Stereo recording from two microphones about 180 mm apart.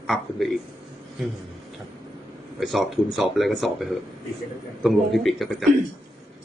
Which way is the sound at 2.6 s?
Centre (ahead or behind).